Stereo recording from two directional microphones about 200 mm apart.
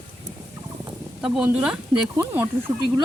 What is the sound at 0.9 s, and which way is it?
Speech, 5° right (ahead or behind).